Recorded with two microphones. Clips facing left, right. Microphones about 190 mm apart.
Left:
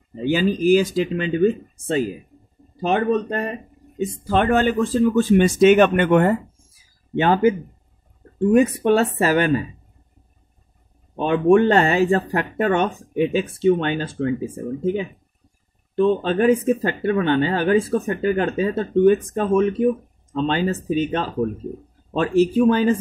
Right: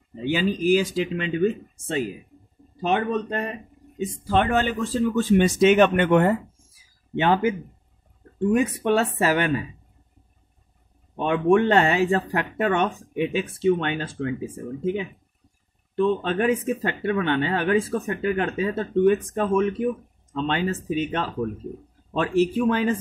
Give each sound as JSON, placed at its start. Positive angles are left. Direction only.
{"t": 0.2, "sound": "speech", "side_deg": 40}
{"t": 7.2, "sound": "speech", "side_deg": 40}
{"t": 11.1, "sound": "speech", "side_deg": 35}
{"t": 16.0, "sound": "speech", "side_deg": 35}